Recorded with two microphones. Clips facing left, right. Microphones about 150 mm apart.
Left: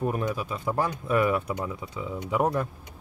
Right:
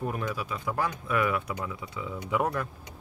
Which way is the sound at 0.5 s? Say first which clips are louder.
Left 3 dB; 35° left (ahead or behind).